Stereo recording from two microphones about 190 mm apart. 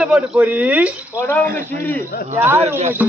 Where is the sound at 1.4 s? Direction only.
45° right (ahead or behind).